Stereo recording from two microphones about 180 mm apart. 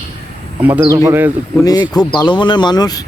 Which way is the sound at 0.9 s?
20° right (ahead or behind).